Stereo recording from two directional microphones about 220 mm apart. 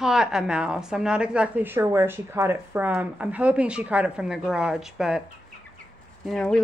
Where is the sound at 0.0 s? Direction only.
5° right (ahead or behind).